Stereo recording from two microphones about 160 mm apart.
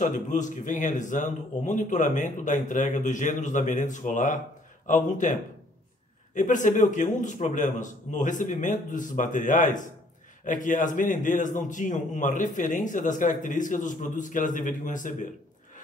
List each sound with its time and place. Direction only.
0.0 s a man's voice: 50° left (ahead or behind)